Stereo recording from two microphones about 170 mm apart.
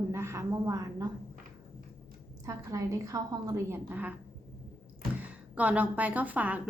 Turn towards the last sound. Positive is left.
turn(degrees=-10)  # may be behind; listen again after turning